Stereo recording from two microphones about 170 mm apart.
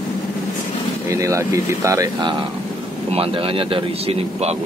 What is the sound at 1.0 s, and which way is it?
Speech, 15° right (ahead or behind).